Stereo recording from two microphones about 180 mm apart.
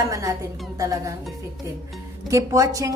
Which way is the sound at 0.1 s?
20° right (ahead or behind).